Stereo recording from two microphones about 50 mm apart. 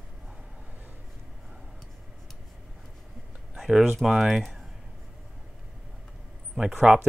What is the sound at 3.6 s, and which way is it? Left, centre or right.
Speech, centre.